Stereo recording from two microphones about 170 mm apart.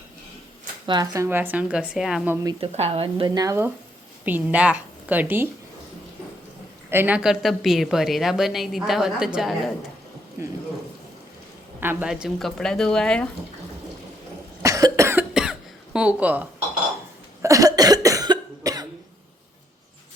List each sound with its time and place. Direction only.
0.9 s speech: 20° right (ahead or behind)
2.5 s speech: 35° right (ahead or behind); by 5.5 s 10° right (ahead or behind)
6.9 s a woman's voice: 10° right (ahead or behind)
11.8 s a woman's voice: 10° right (ahead or behind); by 13.2 s 5° left (ahead or behind)
14.6 s cough: 20° right (ahead or behind)
15.3 s cough: 5° right (ahead or behind)
17.4 s cough: 20° right (ahead or behind)